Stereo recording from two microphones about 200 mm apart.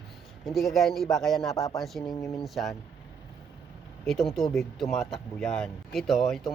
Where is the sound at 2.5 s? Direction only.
Centre (ahead or behind).